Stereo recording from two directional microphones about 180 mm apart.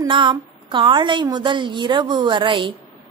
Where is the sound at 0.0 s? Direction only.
25° right (ahead or behind).